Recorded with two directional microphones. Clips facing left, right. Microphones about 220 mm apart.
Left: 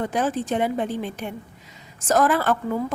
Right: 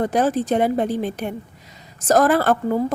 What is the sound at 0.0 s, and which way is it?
A woman's voice, 40° right (ahead or behind).